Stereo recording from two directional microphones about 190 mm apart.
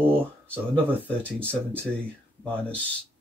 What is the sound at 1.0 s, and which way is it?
Speech, 5° left (ahead or behind).